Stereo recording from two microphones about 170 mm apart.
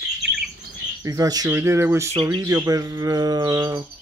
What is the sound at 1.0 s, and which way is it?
Speech, 20° right (ahead or behind).